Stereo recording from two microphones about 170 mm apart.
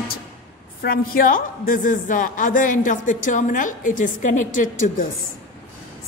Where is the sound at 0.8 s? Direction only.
60° left (ahead or behind).